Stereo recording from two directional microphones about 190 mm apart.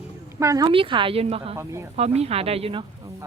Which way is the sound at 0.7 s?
25° right (ahead or behind).